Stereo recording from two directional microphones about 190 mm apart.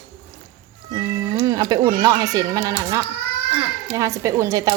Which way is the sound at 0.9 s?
15° right (ahead or behind).